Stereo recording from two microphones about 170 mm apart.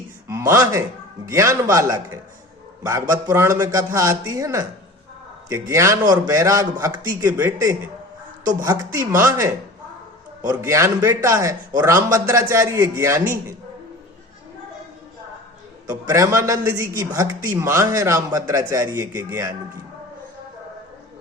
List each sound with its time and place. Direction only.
0.3 s a man's voice: 15° right (ahead or behind)
10.5 s a man's voice: 15° right (ahead or behind)
16.0 s a man's voice: 15° right (ahead or behind)